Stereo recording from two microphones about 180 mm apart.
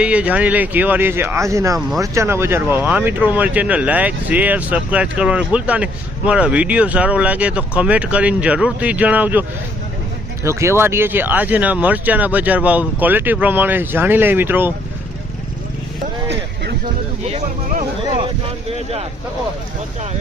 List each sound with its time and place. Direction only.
0.0 s speech: 5° right (ahead or behind)
10.4 s speech: 15° right (ahead or behind)
18.7 s speech: 35° right (ahead or behind)